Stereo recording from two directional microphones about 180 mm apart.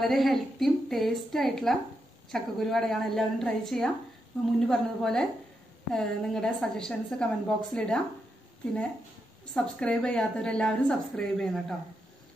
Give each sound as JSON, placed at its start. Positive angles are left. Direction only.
{"t": 0.0, "sound": "a woman's voice", "side_deg": 0}
{"t": 9.5, "sound": "a woman's voice", "side_deg": 5}